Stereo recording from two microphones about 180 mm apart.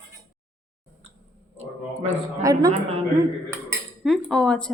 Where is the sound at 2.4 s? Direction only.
20° right (ahead or behind).